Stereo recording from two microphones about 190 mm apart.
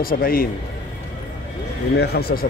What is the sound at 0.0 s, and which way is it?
Speech, 50° left (ahead or behind).